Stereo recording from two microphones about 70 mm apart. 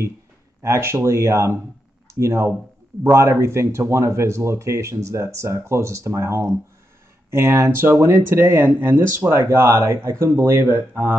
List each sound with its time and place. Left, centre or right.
0.6 s speech: right